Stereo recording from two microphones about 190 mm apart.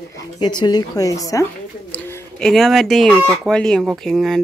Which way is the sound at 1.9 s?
5° left (ahead or behind).